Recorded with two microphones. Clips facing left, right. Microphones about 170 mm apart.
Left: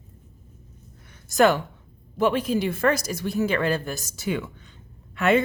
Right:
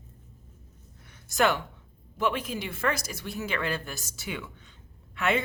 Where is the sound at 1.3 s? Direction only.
40° left (ahead or behind).